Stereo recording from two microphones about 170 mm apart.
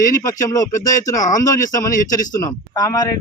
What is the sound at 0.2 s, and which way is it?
Speech, 20° left (ahead or behind).